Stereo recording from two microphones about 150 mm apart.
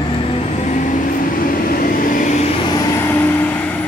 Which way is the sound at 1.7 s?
70° left (ahead or behind).